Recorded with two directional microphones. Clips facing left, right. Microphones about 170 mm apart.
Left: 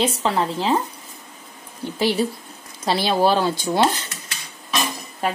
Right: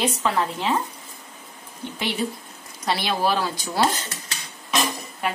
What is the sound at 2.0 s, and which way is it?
Speech, 35° left (ahead or behind).